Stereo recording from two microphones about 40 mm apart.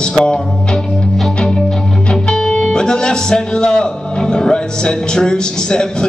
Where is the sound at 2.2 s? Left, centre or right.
Left.